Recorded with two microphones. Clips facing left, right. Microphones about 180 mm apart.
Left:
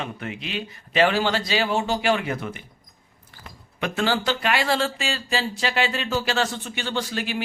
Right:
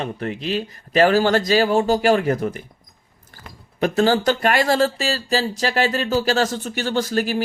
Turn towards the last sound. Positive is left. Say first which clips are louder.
# right 6 dB
turn(degrees=-40)  # may be behind; listen again after turning